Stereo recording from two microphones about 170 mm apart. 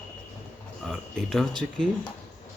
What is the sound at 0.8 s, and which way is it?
Speech, centre (ahead or behind).